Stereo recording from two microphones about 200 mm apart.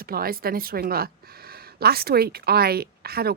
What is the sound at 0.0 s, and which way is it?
Speech, 50° right (ahead or behind).